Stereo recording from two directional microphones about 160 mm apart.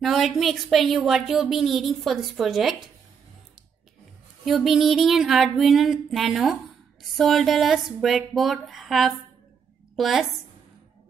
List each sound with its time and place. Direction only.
0.0 s a woman's voice: centre (ahead or behind)
4.5 s a woman's voice: centre (ahead or behind)